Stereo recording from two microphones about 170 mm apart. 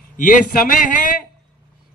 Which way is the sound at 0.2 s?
50° left (ahead or behind).